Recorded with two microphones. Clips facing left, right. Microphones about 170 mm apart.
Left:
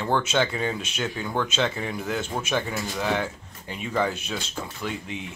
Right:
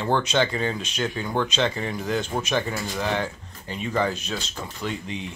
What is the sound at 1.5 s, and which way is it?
Speech, 5° left (ahead or behind).